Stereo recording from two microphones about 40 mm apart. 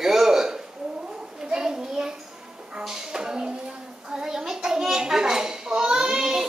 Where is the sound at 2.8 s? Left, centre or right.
Centre.